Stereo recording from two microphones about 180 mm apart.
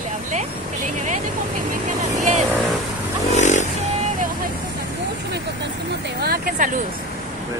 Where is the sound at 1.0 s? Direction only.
45° right (ahead or behind).